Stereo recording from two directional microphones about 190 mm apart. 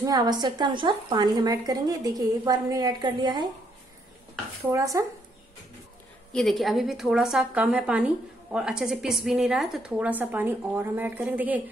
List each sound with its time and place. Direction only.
0.0 s speech: 20° right (ahead or behind)
4.7 s a woman's voice: 15° right (ahead or behind)
6.3 s a woman's voice: centre (ahead or behind)